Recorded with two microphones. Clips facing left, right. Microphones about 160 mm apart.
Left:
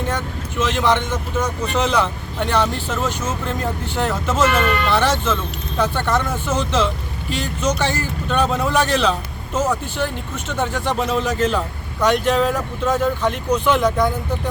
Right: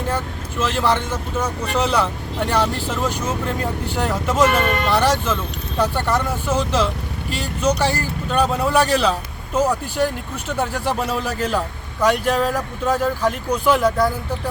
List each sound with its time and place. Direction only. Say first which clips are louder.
0.6 s a man's voice: left 1 dB; 5° right (ahead or behind)
4.4 s speech: left 2 dB; 35° right (ahead or behind)
4.9 s a man's voice: even; 10° right (ahead or behind)